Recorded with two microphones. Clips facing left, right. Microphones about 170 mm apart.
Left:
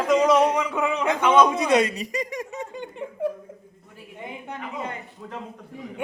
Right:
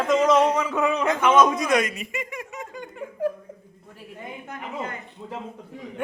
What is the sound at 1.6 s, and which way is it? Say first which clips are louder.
Speech: left 2 dB; 30° left (ahead or behind).